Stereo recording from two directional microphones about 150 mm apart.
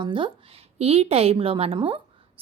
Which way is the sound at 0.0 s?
35° right (ahead or behind).